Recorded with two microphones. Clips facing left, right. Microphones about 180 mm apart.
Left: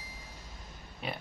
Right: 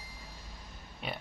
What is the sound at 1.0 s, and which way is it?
Speech, centre (ahead or behind).